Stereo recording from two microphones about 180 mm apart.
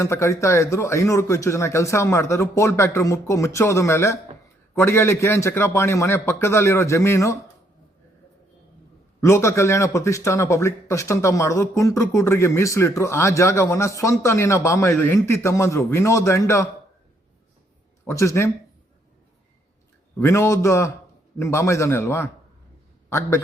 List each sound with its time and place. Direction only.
0.0 s a man's voice: 15° left (ahead or behind)
9.2 s a man's voice: 15° left (ahead or behind)
18.0 s a man's voice: 15° left (ahead or behind)
20.1 s a man's voice: 15° left (ahead or behind)